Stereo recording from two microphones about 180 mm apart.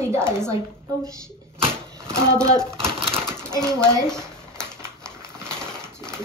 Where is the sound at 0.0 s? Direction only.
15° right (ahead or behind).